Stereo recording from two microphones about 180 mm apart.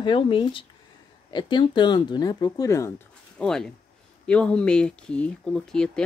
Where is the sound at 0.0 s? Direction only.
25° left (ahead or behind).